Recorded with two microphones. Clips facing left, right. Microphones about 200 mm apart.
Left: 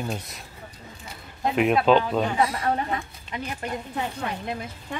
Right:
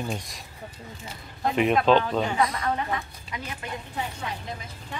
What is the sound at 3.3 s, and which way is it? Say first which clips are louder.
Speech: left 4 dB; centre (ahead or behind).